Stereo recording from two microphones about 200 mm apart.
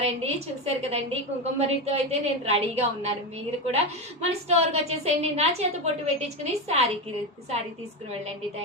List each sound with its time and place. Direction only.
0.0 s a woman's voice: 30° right (ahead or behind)